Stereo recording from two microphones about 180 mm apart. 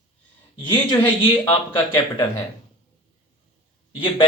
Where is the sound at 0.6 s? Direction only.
25° left (ahead or behind).